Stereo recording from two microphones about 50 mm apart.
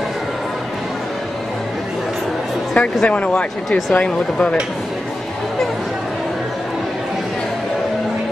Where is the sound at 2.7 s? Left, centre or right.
Left.